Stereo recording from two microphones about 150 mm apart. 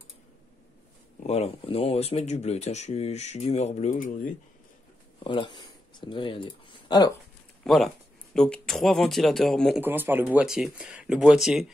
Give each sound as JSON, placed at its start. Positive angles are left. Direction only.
{"t": 1.2, "sound": "speech", "side_deg": 45}
{"t": 5.2, "sound": "speech", "side_deg": 30}
{"t": 7.6, "sound": "speech", "side_deg": 0}
{"t": 9.8, "sound": "speech", "side_deg": -15}